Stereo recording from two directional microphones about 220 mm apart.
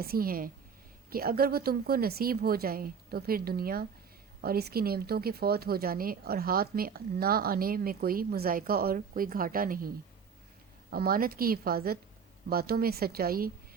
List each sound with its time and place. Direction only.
0.0 s a woman's voice: 45° right (ahead or behind)
10.9 s a woman's voice: 40° right (ahead or behind)